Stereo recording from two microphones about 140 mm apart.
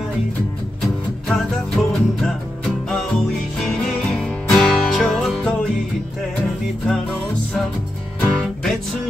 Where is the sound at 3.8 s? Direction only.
5° left (ahead or behind).